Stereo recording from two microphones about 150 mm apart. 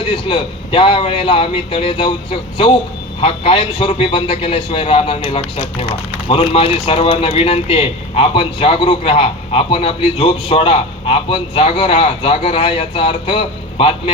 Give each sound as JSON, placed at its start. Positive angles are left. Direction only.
{"t": 0.1, "sound": "a man's voice", "side_deg": 35}